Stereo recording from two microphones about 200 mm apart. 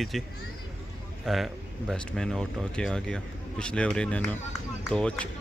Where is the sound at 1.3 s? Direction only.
Centre (ahead or behind).